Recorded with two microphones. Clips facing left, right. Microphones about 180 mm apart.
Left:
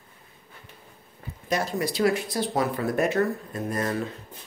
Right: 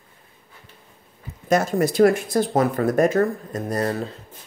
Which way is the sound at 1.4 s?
50° right (ahead or behind).